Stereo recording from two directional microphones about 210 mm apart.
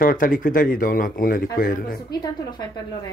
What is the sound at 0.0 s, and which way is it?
Speech, 40° left (ahead or behind).